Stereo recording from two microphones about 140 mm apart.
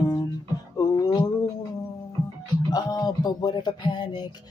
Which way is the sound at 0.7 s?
25° left (ahead or behind).